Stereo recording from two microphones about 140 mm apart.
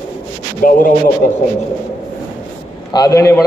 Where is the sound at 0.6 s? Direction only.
80° left.